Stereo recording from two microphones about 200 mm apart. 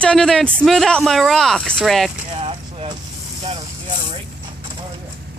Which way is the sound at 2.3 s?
30° right (ahead or behind).